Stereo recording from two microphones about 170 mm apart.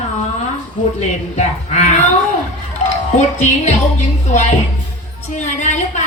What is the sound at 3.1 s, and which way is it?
Speech, 45° left (ahead or behind).